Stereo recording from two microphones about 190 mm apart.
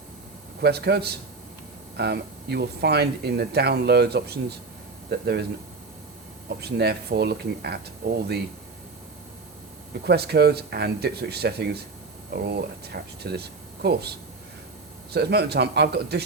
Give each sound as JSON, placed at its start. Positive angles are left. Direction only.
{"t": 0.6, "sound": "speech", "side_deg": -60}
{"t": 6.6, "sound": "speech", "side_deg": -60}
{"t": 10.1, "sound": "speech", "side_deg": -60}
{"t": 15.1, "sound": "speech", "side_deg": -60}